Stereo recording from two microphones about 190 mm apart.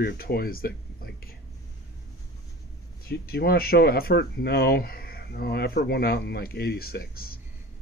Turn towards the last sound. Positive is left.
turn(degrees=55)  # may be behind; listen again after turning